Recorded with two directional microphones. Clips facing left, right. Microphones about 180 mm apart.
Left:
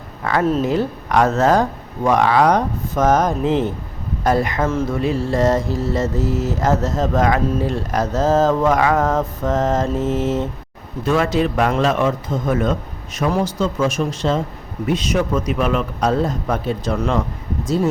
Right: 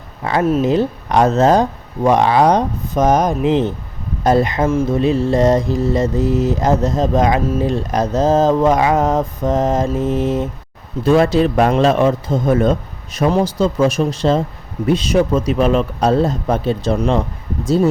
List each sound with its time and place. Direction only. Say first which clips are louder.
0.6 s speech: right 4 dB; 20° right (ahead or behind)
4.6 s mantra: right 4 dB; 10° right (ahead or behind)
4.9 s mantra: right 5 dB; 20° right (ahead or behind)
11.0 s a man's voice: right 5 dB; 35° right (ahead or behind)